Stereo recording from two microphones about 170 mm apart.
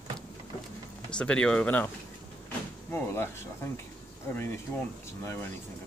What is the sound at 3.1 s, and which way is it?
Speech, 15° left (ahead or behind).